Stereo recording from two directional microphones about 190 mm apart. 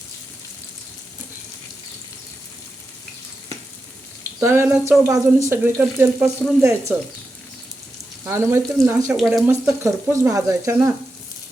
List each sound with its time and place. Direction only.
4.4 s speech: 10° right (ahead or behind)
8.3 s speech: 15° right (ahead or behind)
9.1 s speech: centre (ahead or behind)
9.5 s speech: 15° right (ahead or behind)